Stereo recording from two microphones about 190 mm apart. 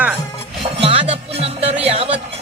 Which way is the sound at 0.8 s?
30° right (ahead or behind).